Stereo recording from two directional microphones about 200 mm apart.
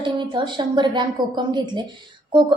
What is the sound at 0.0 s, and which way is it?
A woman's voice, 25° right (ahead or behind).